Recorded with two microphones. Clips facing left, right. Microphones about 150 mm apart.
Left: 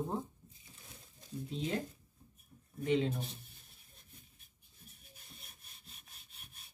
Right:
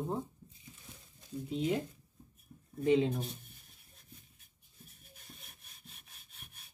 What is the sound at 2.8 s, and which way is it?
Speech, 20° right (ahead or behind).